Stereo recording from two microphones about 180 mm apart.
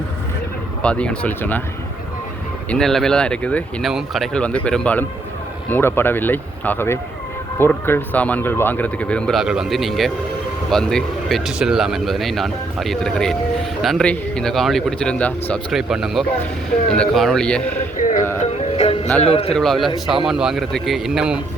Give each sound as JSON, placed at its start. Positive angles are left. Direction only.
{"t": 0.8, "sound": "speech", "side_deg": 5}
{"t": 2.6, "sound": "speech", "side_deg": 5}
{"t": 17.9, "sound": "speech", "side_deg": 45}
{"t": 18.4, "sound": "music", "side_deg": 35}
{"t": 19.2, "sound": "a man's voice", "side_deg": 35}
{"t": 19.5, "sound": "speech", "side_deg": 0}